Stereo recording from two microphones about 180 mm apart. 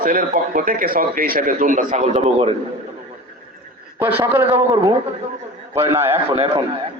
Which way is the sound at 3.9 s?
10° right (ahead or behind).